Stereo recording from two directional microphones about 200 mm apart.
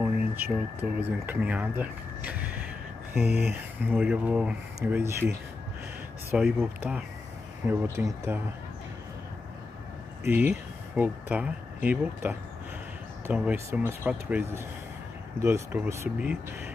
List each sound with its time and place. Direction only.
0.4 s speech: 10° right (ahead or behind)
6.3 s speech: 5° right (ahead or behind)
10.2 s speech: 10° right (ahead or behind)